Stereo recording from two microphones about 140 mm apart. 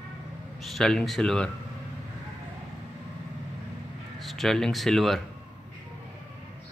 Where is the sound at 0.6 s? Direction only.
Centre (ahead or behind).